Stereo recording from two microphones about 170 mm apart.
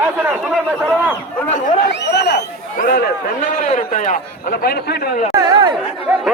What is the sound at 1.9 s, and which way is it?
Speech, 90° left.